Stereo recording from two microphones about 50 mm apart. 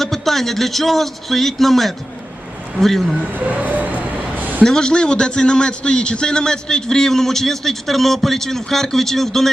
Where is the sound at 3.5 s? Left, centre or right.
Right.